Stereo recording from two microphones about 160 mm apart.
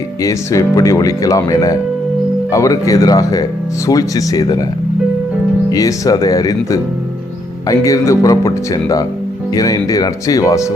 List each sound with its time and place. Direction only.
0.2 s speech: 20° left (ahead or behind)
5.7 s speech: 20° left (ahead or behind)